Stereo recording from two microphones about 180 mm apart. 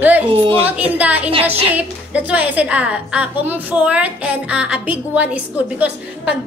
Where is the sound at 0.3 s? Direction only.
30° right (ahead or behind).